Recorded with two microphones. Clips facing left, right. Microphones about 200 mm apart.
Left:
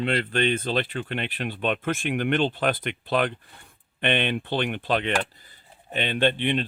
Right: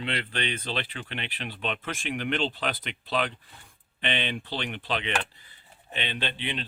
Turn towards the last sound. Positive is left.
turn(degrees=50)  # may be behind; listen again after turning